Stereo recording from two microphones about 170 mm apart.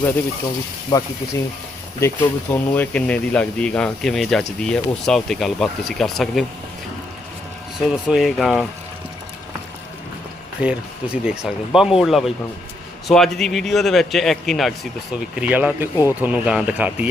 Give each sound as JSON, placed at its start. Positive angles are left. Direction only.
{"t": 0.9, "sound": "speech", "side_deg": 20}
{"t": 7.9, "sound": "speech", "side_deg": 0}
{"t": 10.6, "sound": "speech", "side_deg": -5}
{"t": 15.4, "sound": "speech", "side_deg": -10}